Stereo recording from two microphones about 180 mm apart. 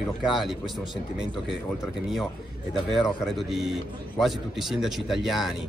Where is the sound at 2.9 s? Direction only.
Centre (ahead or behind).